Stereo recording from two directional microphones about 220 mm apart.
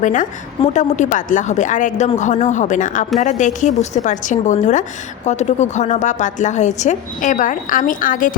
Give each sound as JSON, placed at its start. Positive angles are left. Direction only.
{"t": 0.0, "sound": "a woman's voice", "side_deg": 35}